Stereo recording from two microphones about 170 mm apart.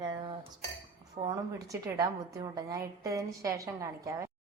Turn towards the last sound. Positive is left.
turn(degrees=-20)  # may be behind; listen again after turning